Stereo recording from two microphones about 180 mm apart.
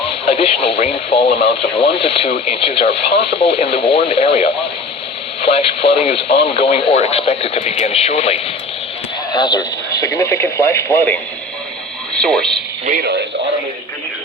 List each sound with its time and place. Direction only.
0.3 s speech: 35° left (ahead or behind)
9.3 s speech: 25° left (ahead or behind)
12.1 s speech: 5° left (ahead or behind)
13.0 s speech: 70° right (ahead or behind)